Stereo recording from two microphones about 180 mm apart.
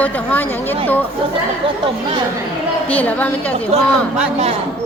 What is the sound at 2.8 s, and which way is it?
Speech, 10° left (ahead or behind).